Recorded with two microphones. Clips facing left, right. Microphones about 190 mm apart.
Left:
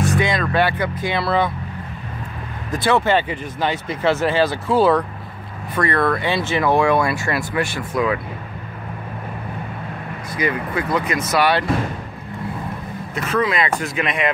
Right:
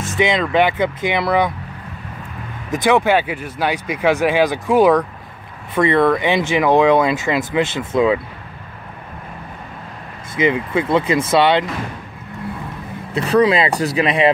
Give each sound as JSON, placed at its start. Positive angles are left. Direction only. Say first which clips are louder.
{"t": 0.1, "sound": "speech", "louder": "right 3 dB", "side_deg": -20}
{"t": 2.7, "sound": "speech", "louder": "right 3 dB", "side_deg": -15}
{"t": 10.3, "sound": "speech", "louder": "right 5 dB", "side_deg": -25}
{"t": 13.1, "sound": "speech", "louder": "right 7 dB", "side_deg": -35}